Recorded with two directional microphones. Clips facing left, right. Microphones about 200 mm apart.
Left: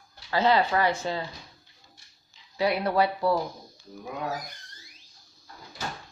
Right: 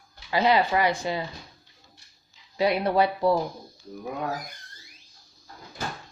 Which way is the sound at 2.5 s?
20° right (ahead or behind).